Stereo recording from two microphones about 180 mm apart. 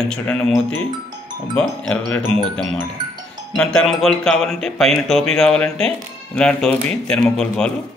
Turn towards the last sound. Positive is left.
turn(degrees=5)  # may be behind; listen again after turning